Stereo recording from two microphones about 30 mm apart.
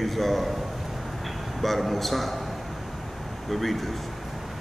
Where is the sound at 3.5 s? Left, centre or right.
Centre.